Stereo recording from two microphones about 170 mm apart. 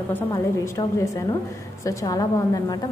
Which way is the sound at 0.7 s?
20° left (ahead or behind).